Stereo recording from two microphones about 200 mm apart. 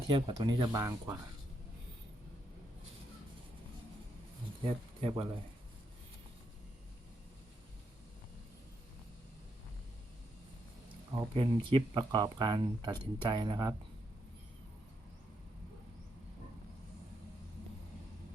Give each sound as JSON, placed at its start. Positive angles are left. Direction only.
{"t": 0.1, "sound": "speech", "side_deg": -25}
{"t": 4.6, "sound": "speech", "side_deg": -25}
{"t": 11.1, "sound": "speech", "side_deg": -20}